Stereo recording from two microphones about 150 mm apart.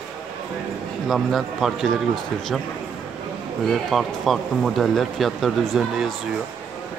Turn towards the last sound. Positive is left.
turn(degrees=0)  # may be behind; listen again after turning